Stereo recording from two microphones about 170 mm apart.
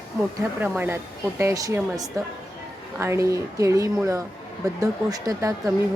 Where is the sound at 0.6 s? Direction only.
10° right (ahead or behind).